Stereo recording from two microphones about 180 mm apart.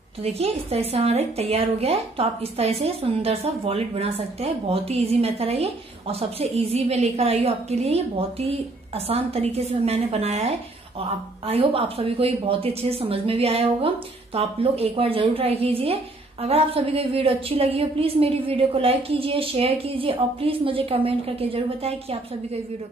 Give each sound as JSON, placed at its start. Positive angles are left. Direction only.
{"t": 0.2, "sound": "a woman's voice", "side_deg": -35}